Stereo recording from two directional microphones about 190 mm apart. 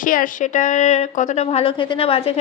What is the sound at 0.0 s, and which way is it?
A woman's voice, 45° left (ahead or behind).